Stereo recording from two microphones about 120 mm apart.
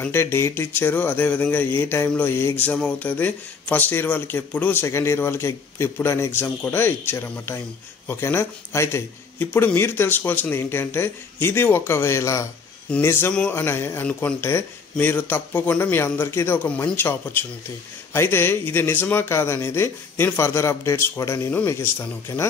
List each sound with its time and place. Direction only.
0.0 s speech: 20° left (ahead or behind)